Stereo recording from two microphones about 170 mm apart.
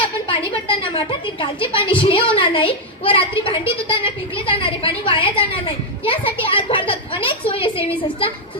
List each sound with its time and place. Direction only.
0.0 s a woman's voice: 30° left (ahead or behind)